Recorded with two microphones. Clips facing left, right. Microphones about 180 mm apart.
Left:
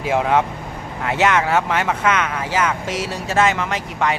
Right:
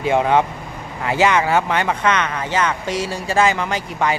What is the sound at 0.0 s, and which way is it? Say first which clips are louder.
Speech: right 2 dB; centre (ahead or behind).